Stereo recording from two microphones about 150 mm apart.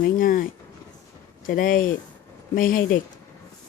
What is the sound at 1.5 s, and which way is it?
Speech, 65° left (ahead or behind).